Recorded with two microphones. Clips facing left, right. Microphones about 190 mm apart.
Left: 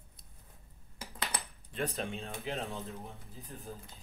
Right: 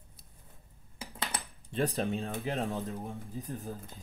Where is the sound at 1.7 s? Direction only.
35° right (ahead or behind).